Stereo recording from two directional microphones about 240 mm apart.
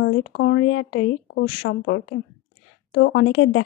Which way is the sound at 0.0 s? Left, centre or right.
Left.